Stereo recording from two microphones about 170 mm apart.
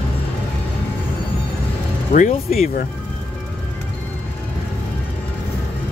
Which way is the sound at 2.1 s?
50° left (ahead or behind).